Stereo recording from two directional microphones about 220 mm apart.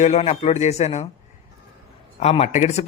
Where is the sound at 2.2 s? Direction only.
30° left (ahead or behind).